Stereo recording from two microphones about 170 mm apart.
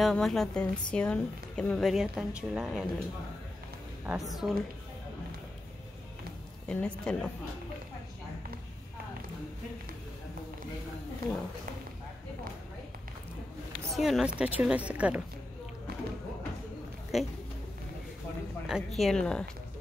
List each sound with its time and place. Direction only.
0.0 s a woman's voice: centre (ahead or behind)
4.0 s a woman's voice: 5° right (ahead or behind)
6.7 s a woman's voice: 5° left (ahead or behind)
13.9 s a woman's voice: centre (ahead or behind)
15.9 s music: 70° right (ahead or behind)
17.1 s a woman's voice: centre (ahead or behind)
18.7 s a woman's voice: centre (ahead or behind)